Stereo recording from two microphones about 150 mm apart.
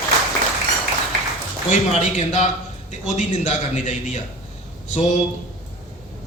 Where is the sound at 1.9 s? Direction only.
50° left (ahead or behind).